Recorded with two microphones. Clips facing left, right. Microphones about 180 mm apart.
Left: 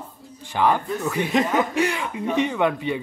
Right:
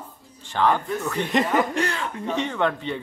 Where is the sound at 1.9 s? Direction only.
10° left (ahead or behind).